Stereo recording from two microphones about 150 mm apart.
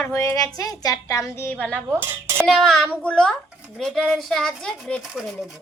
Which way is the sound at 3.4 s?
5° right (ahead or behind).